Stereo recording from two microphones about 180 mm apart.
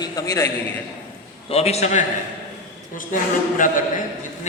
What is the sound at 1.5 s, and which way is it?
Speech, 35° left (ahead or behind).